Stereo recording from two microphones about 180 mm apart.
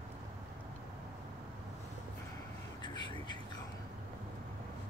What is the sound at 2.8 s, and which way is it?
Vehicle, 25° left (ahead or behind).